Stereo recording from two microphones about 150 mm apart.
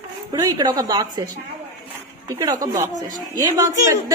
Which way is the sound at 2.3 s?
25° right (ahead or behind).